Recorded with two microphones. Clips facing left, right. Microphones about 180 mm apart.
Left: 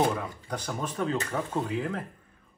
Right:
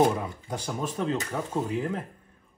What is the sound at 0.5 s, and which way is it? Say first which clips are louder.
A man's voice: right 1 dB; 10° right (ahead or behind).